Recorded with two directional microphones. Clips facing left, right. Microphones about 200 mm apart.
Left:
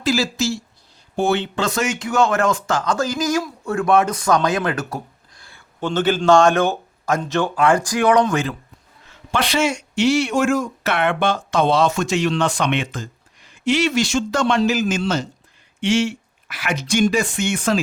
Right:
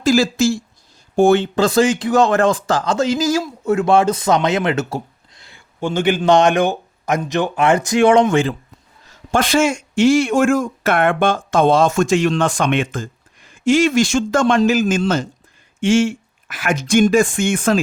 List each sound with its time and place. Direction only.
0.0 s speech: 50° right (ahead or behind)
1.6 s a man's voice: 35° right (ahead or behind)
9.0 s speech: 45° right (ahead or behind)